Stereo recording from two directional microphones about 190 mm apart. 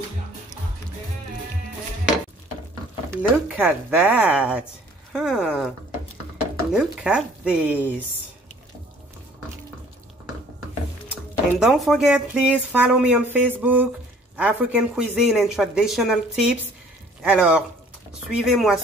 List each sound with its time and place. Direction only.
3.2 s speech: 5° right (ahead or behind)
6.7 s speech: 5° right (ahead or behind)
11.6 s speech: centre (ahead or behind)